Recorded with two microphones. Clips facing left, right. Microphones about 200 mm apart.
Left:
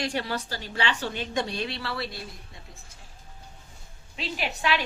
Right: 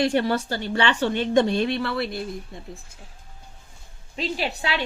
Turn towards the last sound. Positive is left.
turn(degrees=-30)  # may be behind; listen again after turning